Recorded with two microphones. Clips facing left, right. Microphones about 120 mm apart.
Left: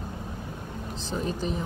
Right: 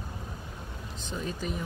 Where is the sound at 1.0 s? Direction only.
35° left (ahead or behind).